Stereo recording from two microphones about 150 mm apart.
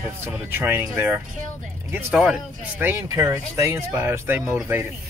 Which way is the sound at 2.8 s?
15° right (ahead or behind).